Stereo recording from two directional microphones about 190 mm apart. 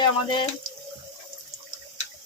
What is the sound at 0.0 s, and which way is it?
Speech, 25° left (ahead or behind).